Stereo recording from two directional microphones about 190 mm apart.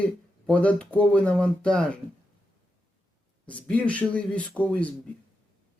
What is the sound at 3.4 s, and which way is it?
Speech, 5° left (ahead or behind).